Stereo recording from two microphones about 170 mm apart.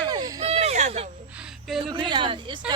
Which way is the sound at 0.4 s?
40° right (ahead or behind).